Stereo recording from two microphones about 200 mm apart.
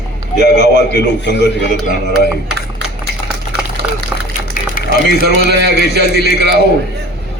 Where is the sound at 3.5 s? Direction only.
55° right (ahead or behind).